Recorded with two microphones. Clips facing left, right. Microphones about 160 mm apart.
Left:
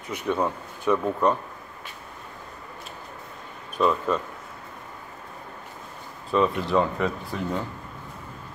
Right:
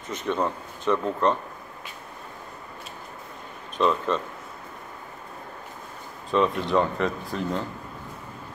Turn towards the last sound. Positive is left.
turn(degrees=5)  # may be behind; listen again after turning